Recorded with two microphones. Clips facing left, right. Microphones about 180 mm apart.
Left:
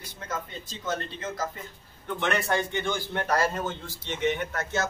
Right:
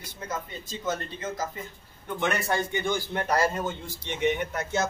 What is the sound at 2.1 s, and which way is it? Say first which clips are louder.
A man's voice: even; 10° right (ahead or behind).